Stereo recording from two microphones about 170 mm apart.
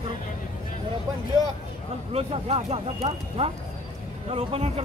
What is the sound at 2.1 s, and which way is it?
Speech, 35° right (ahead or behind).